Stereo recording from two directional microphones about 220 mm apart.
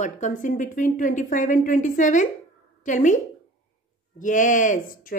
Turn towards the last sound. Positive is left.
turn(degrees=40)  # may be behind; listen again after turning